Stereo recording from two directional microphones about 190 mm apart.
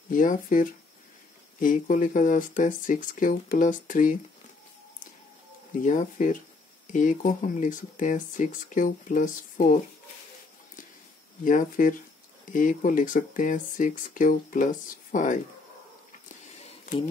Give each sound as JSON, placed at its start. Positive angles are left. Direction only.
{"t": 0.1, "sound": "speech", "side_deg": 45}
{"t": 5.8, "sound": "speech", "side_deg": 40}
{"t": 11.4, "sound": "speech", "side_deg": 45}